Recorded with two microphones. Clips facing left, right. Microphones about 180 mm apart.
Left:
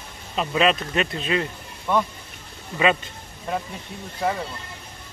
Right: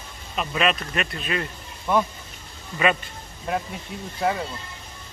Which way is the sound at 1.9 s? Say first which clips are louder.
Right 1 dB; 5° right (ahead or behind).